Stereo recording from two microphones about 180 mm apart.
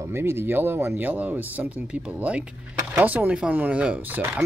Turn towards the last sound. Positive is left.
turn(degrees=-10)  # may be behind; listen again after turning